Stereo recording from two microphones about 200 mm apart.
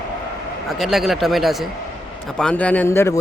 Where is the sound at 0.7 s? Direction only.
Centre (ahead or behind).